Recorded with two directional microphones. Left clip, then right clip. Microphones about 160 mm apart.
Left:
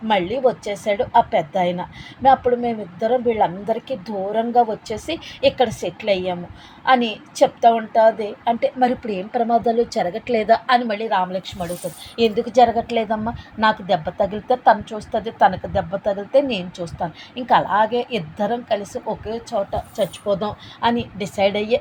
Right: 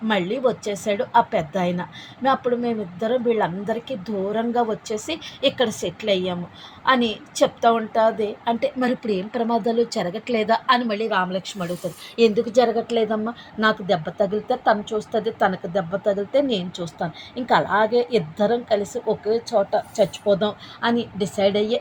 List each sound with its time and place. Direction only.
0.1 s a woman's voice: 5° right (ahead or behind)
13.6 s a woman's voice: 10° left (ahead or behind)
14.5 s speech: 50° left (ahead or behind)
15.2 s a woman's voice: 10° left (ahead or behind)